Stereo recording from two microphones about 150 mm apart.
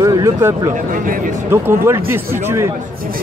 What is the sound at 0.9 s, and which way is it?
Speech, 65° right (ahead or behind).